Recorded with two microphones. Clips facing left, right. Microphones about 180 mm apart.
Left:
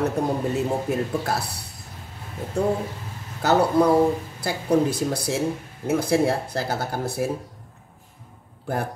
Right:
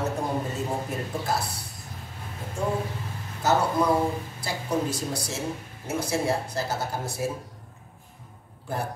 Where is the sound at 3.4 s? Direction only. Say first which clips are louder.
Left 5 dB; 65° left (ahead or behind).